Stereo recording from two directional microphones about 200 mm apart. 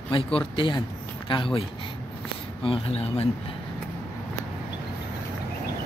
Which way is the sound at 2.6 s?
30° left (ahead or behind).